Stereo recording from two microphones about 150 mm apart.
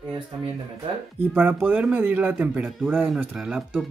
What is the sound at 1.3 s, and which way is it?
Speech, 10° right (ahead or behind).